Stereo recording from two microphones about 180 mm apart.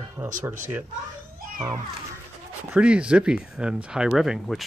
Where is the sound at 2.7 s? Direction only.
5° right (ahead or behind).